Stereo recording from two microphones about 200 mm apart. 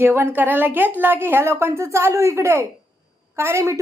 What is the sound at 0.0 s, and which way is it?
A woman's voice, 10° right (ahead or behind).